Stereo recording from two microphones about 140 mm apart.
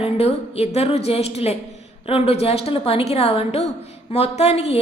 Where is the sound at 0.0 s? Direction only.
45° left (ahead or behind).